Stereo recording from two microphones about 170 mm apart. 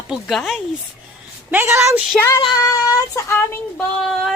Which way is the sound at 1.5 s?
15° right (ahead or behind).